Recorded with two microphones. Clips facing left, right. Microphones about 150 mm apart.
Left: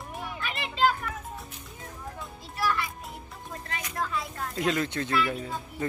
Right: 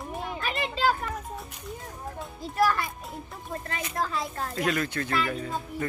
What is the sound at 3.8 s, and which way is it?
Speech, 35° right (ahead or behind).